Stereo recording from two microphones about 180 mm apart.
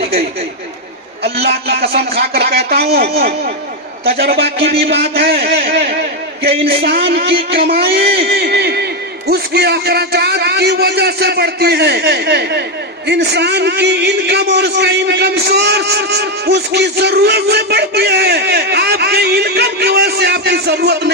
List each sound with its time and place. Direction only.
1.2 s a man's voice: 65° right (ahead or behind)